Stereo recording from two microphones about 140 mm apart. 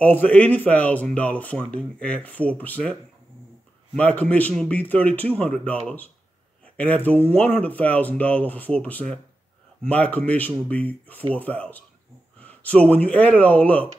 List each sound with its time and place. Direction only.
0.0 s speech: 10° left (ahead or behind)